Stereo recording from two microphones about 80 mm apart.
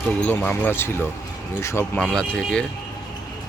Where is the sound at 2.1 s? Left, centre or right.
Centre.